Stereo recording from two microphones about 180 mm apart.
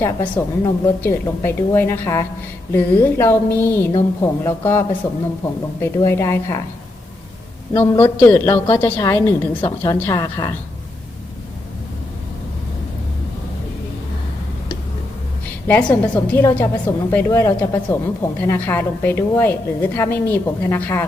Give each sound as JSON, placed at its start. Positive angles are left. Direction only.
{"t": 0.0, "sound": "a woman's voice", "side_deg": 15}
{"t": 6.1, "sound": "a woman's voice", "side_deg": 15}
{"t": 8.0, "sound": "a woman's voice", "side_deg": 10}
{"t": 15.6, "sound": "a woman's voice", "side_deg": 10}